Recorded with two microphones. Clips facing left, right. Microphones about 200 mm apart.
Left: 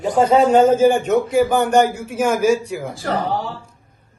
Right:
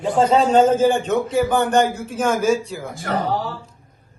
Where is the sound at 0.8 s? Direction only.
10° left (ahead or behind).